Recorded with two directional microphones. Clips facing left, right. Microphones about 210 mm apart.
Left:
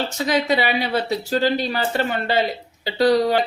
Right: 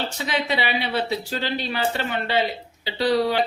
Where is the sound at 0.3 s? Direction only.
40° left (ahead or behind).